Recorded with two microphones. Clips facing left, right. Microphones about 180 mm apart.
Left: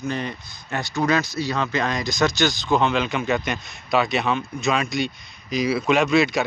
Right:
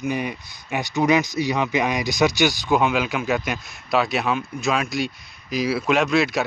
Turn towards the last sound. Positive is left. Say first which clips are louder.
# left 1 dB
turn(degrees=0)  # may be behind; listen again after turning